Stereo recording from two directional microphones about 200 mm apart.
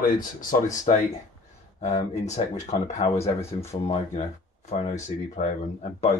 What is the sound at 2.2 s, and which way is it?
Speech, 35° left (ahead or behind).